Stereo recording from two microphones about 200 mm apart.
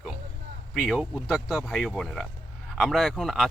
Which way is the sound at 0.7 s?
Centre (ahead or behind).